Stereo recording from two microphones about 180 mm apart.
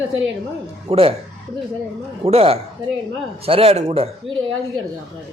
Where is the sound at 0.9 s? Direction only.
35° right (ahead or behind).